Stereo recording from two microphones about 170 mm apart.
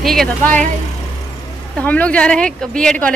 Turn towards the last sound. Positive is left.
turn(degrees=5)  # may be behind; listen again after turning